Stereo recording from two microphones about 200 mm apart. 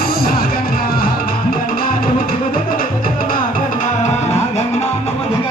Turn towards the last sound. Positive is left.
turn(degrees=45)  # may be behind; listen again after turning